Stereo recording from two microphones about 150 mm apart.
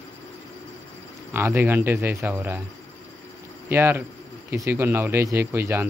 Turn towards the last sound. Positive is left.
turn(degrees=-15)  # may be behind; listen again after turning